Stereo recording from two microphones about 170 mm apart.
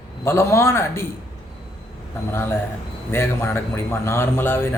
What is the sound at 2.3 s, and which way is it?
Speech, 15° left (ahead or behind).